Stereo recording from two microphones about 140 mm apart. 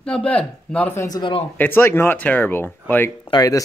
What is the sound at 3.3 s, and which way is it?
Speech, 25° left (ahead or behind).